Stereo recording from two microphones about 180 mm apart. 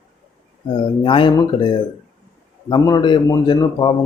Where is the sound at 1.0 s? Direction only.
25° left (ahead or behind).